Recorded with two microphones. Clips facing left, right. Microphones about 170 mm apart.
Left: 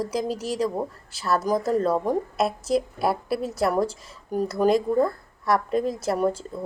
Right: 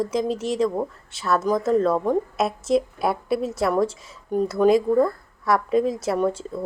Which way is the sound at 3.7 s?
30° left (ahead or behind).